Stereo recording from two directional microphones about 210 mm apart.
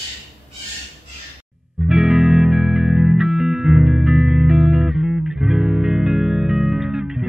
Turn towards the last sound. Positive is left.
turn(degrees=-5)  # may be behind; listen again after turning